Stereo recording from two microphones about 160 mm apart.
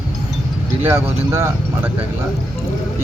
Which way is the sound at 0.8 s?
15° right (ahead or behind).